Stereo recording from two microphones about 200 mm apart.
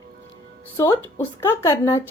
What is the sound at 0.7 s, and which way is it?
Speech, 15° left (ahead or behind).